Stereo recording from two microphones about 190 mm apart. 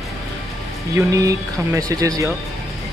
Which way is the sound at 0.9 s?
20° right (ahead or behind).